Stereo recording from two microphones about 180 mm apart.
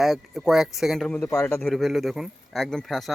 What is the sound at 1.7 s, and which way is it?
Speech, centre (ahead or behind).